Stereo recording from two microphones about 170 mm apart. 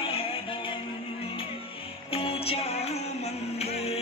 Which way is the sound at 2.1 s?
35° left (ahead or behind).